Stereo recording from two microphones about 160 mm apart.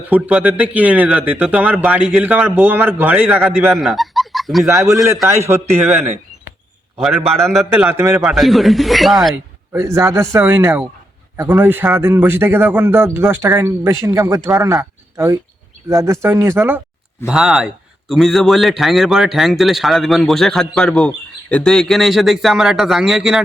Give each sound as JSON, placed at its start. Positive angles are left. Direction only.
{"t": 0.1, "sound": "speech", "side_deg": -5}
{"t": 3.8, "sound": "fowl", "side_deg": 0}
{"t": 4.7, "sound": "a man's voice", "side_deg": -20}
{"t": 7.7, "sound": "speech", "side_deg": -15}
{"t": 8.2, "sound": "a man's voice", "side_deg": 0}
{"t": 9.3, "sound": "speech", "side_deg": -15}
{"t": 17.2, "sound": "a man's voice", "side_deg": -5}